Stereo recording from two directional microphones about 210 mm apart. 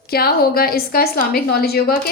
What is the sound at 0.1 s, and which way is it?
A woman's voice, 45° left (ahead or behind).